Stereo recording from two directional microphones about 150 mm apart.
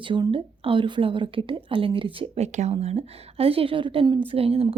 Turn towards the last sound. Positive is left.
turn(degrees=-40)  # may be behind; listen again after turning